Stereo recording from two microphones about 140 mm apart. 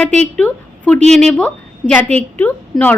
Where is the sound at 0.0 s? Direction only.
10° left (ahead or behind).